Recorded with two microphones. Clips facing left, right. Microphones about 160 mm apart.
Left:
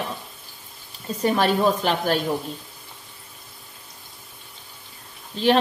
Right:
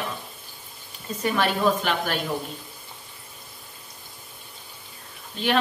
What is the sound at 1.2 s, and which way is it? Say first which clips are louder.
Speech: left 3 dB; 35° left (ahead or behind).